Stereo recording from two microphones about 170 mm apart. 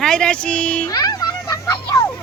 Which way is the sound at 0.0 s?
5° left (ahead or behind).